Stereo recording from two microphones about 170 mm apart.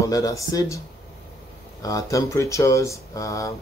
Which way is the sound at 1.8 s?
20° left (ahead or behind).